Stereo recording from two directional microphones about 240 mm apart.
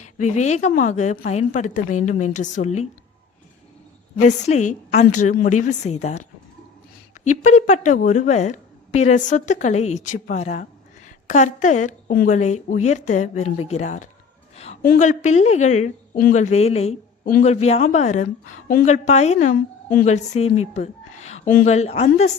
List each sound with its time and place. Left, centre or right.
0.0 s a woman's voice: left
4.3 s a woman's voice: left